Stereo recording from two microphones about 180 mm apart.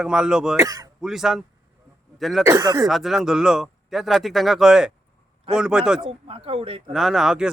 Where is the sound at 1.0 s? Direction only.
Centre (ahead or behind).